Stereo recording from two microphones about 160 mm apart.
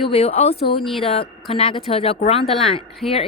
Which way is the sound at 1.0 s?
35° left (ahead or behind).